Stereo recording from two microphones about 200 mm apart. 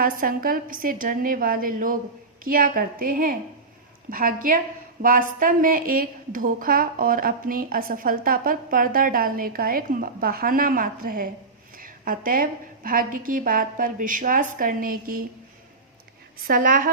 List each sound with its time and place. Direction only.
0.0 s a woman's voice: 45° right (ahead or behind)
16.5 s a woman's voice: 45° right (ahead or behind)